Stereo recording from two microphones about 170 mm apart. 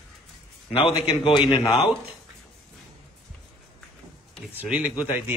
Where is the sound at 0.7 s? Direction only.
30° left (ahead or behind).